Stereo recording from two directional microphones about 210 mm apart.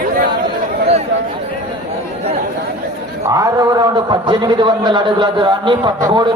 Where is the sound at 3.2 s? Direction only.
15° right (ahead or behind).